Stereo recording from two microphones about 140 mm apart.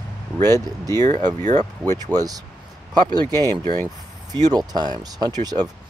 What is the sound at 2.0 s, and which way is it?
Speech, 25° right (ahead or behind).